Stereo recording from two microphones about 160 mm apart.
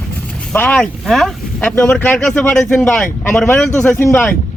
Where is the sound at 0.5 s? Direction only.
10° left (ahead or behind).